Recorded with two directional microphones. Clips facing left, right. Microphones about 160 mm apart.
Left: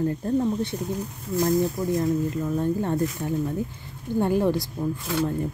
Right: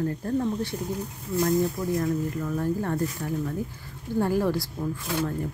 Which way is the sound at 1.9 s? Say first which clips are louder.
Left 3 dB; 20° left (ahead or behind).